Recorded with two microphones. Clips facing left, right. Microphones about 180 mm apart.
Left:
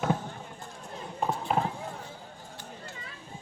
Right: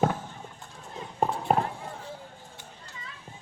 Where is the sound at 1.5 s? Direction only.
40° right (ahead or behind).